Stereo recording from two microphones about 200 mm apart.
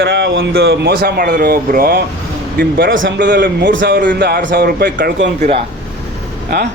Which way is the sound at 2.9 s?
70° right (ahead or behind).